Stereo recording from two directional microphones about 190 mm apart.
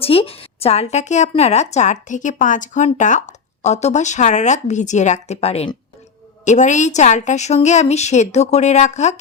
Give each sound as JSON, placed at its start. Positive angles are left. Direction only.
{"t": 0.0, "sound": "speech", "side_deg": 30}